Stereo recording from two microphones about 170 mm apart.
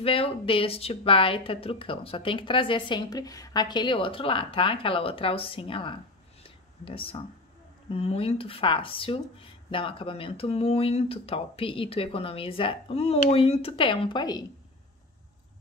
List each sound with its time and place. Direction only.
0.0 s a woman's voice: 35° left (ahead or behind)
6.4 s a sound: 35° left (ahead or behind)
7.9 s a woman's voice: 35° left (ahead or behind)